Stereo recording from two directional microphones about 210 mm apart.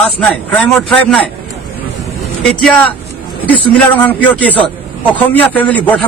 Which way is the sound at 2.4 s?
5° left (ahead or behind).